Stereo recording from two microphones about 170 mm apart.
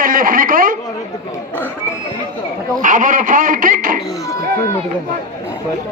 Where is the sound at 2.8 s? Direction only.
50° right (ahead or behind).